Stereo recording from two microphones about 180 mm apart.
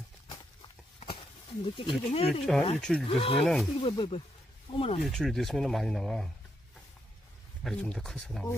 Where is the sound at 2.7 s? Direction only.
5° left (ahead or behind).